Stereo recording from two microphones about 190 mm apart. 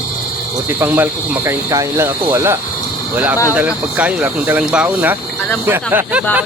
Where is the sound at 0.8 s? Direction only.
10° right (ahead or behind).